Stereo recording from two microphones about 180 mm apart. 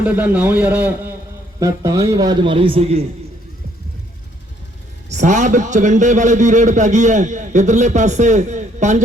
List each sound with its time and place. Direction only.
0.0 s a man's voice: 10° right (ahead or behind)
1.5 s a man's voice: 20° right (ahead or behind)
5.0 s a man's voice: 40° right (ahead or behind)